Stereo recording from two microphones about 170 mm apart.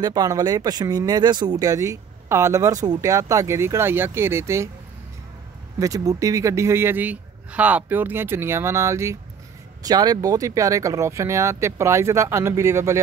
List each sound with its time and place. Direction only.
0.0 s a man's voice: 25° right (ahead or behind)
5.8 s a man's voice: 20° right (ahead or behind)